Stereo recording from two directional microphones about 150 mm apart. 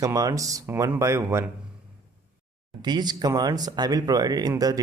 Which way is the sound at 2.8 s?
25° right (ahead or behind).